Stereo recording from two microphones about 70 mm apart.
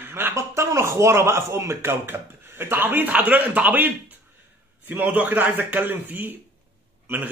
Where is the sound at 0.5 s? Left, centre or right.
Right.